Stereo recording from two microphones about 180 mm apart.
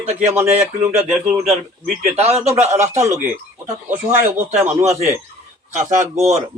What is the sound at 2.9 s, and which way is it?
A man's voice, 15° right (ahead or behind).